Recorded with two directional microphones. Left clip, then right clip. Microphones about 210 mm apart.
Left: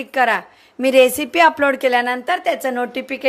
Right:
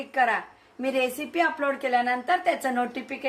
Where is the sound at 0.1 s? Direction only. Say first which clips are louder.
Left 7 dB; 45° left (ahead or behind); by 3.0 s 30° left (ahead or behind).